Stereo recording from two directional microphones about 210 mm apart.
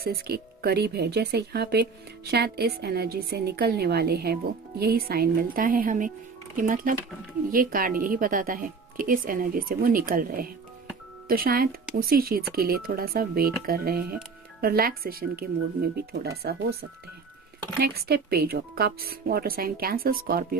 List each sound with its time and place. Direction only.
0.0 s speech: 50° right (ahead or behind)
17.7 s speech: 50° right (ahead or behind)